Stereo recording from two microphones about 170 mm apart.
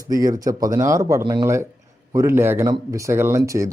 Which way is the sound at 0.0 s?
20° right (ahead or behind).